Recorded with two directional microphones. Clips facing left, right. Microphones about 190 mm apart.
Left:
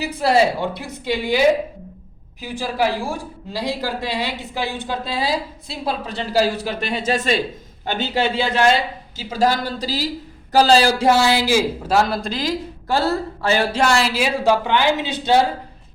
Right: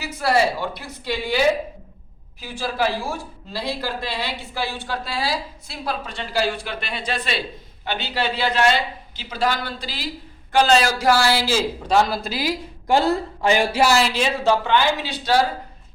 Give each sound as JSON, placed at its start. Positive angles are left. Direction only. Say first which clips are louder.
{"t": 0.2, "sound": "a man's voice", "louder": "left 3 dB", "side_deg": 20}
{"t": 6.1, "sound": "a man's voice", "louder": "left 5 dB", "side_deg": 40}
{"t": 8.2, "sound": "speech", "louder": "left 2 dB", "side_deg": 25}
{"t": 9.3, "sound": "a man's voice", "louder": "left 4 dB", "side_deg": 40}